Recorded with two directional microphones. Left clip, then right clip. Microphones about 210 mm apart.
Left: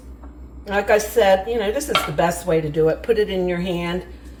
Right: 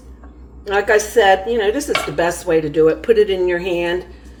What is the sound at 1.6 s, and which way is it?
Speech, 35° right (ahead or behind).